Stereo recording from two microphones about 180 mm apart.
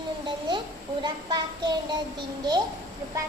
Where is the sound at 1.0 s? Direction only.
25° right (ahead or behind).